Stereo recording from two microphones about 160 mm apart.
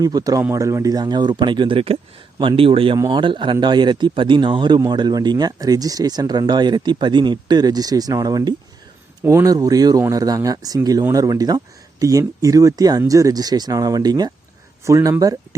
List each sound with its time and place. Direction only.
0.0 s a man's voice: 25° right (ahead or behind)